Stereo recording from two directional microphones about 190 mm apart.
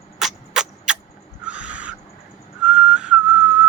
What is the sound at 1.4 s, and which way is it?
Owl, 5° right (ahead or behind).